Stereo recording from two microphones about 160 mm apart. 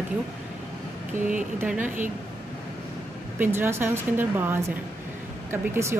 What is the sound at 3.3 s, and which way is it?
A woman's voice, 15° right (ahead or behind).